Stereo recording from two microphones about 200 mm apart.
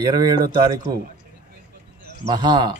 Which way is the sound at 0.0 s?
20° right (ahead or behind).